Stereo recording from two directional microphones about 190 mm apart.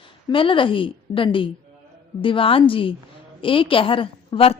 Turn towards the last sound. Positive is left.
turn(degrees=30)  # may be behind; listen again after turning